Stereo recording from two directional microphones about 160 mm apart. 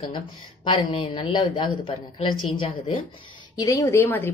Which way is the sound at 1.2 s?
30° left (ahead or behind).